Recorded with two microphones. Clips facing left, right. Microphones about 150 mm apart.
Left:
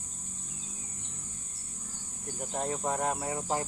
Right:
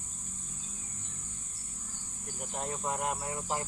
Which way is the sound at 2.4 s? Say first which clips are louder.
Left 4 dB; 40° left (ahead or behind).